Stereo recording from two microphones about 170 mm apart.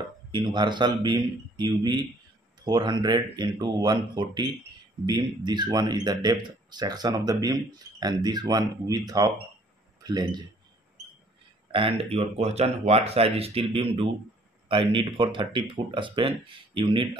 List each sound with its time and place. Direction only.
0.3 s speech: 25° right (ahead or behind)
11.7 s speech: 30° right (ahead or behind)